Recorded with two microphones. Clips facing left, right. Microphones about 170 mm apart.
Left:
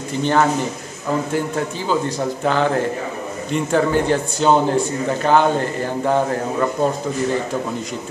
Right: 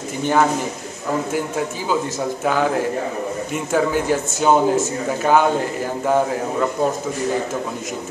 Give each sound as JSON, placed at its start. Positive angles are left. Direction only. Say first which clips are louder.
{"t": 0.2, "sound": "speech", "louder": "even", "side_deg": -10}
{"t": 2.4, "sound": "speech", "louder": "left 1 dB", "side_deg": -5}